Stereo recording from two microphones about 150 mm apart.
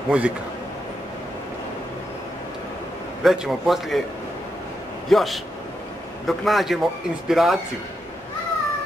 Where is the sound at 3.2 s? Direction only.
5° right (ahead or behind).